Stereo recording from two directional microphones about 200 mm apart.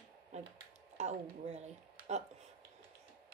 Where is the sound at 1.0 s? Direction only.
35° right (ahead or behind).